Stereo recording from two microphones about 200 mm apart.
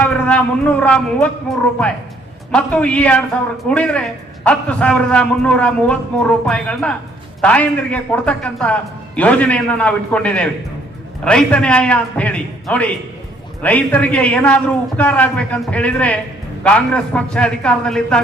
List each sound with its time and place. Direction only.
0.0 s a man's voice: 5° left (ahead or behind)